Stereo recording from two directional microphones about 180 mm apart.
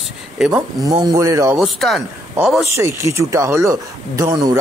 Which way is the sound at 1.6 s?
Centre (ahead or behind).